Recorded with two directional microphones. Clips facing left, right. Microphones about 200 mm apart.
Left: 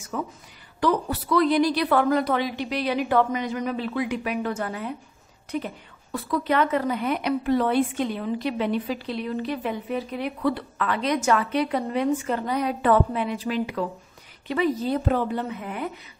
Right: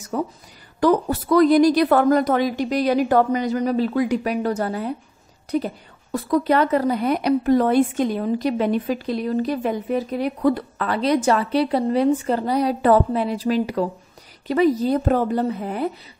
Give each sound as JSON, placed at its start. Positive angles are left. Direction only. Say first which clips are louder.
{"t": 0.1, "sound": "a woman's voice", "louder": "right 6 dB", "side_deg": -35}